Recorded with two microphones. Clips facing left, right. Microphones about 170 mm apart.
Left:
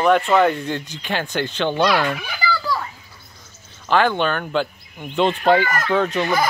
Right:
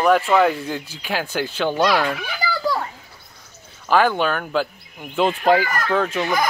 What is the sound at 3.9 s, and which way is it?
Speech, 5° right (ahead or behind).